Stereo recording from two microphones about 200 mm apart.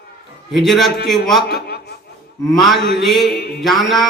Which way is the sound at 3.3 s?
50° left (ahead or behind).